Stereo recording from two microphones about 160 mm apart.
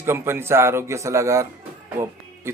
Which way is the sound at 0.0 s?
15° right (ahead or behind).